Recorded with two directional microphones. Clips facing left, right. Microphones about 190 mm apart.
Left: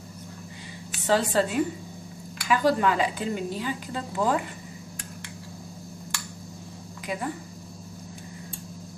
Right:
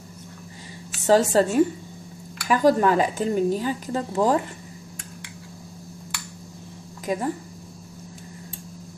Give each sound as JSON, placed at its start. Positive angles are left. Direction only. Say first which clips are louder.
{"t": 1.0, "sound": "speech", "louder": "right 5 dB", "side_deg": -45}
{"t": 7.1, "sound": "speech", "louder": "right 6 dB", "side_deg": -40}